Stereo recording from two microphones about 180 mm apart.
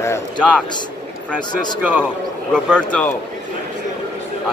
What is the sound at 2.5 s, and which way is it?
Speech, 5° left (ahead or behind).